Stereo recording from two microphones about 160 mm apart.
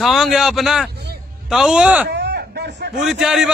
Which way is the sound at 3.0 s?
Centre (ahead or behind).